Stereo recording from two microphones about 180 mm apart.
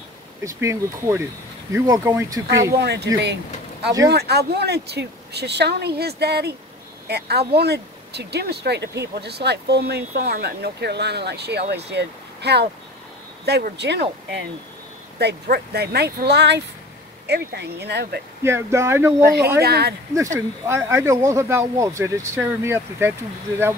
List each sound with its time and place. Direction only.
0.4 s speech: 15° right (ahead or behind)
2.8 s speech: 65° right (ahead or behind)
4.1 s speech: 65° right (ahead or behind)
15.1 s speech: 65° right (ahead or behind)
18.4 s speech: 15° right (ahead or behind)
19.2 s speech: 65° right (ahead or behind)
20.3 s speech: 15° right (ahead or behind)